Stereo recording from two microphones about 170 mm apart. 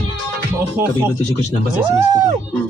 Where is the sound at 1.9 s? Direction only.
20° right (ahead or behind).